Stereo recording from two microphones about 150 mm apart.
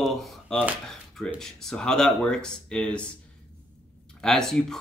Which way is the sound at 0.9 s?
5° left (ahead or behind).